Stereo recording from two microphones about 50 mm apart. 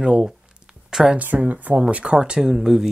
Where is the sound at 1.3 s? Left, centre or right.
Right.